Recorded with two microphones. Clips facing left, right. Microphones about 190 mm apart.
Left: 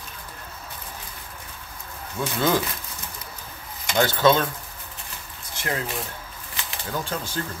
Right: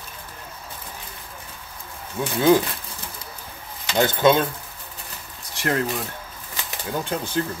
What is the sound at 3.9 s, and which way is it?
Speech, 15° right (ahead or behind).